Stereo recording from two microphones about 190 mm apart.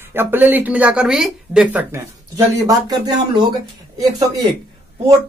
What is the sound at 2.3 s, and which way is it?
Speech, 20° right (ahead or behind).